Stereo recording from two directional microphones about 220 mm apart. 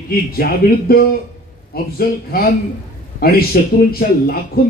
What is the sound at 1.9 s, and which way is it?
A man's voice, 45° left (ahead or behind).